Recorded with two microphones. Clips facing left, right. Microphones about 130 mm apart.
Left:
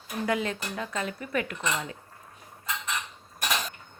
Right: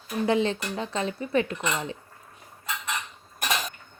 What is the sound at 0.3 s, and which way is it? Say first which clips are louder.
Speech: right 5 dB; 30° right (ahead or behind).